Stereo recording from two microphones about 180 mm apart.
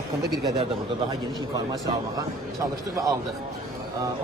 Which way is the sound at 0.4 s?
35° right (ahead or behind).